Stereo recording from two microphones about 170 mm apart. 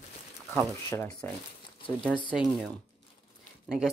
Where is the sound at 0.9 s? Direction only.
10° left (ahead or behind).